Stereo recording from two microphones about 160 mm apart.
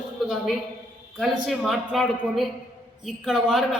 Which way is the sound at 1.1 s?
Centre (ahead or behind).